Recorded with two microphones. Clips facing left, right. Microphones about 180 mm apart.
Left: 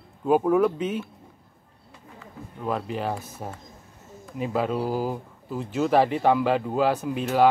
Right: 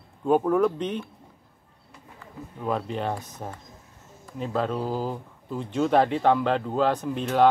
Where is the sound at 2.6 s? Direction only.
Centre (ahead or behind).